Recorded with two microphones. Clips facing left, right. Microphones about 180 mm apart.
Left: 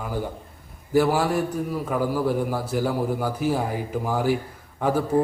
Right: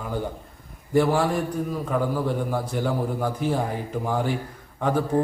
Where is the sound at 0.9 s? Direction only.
5° left (ahead or behind).